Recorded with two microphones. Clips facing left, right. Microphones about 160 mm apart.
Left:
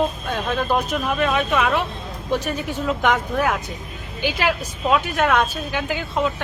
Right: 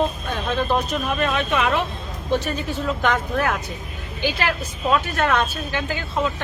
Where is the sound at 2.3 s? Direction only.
15° left (ahead or behind).